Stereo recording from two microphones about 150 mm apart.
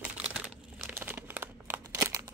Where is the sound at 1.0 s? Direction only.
15° right (ahead or behind).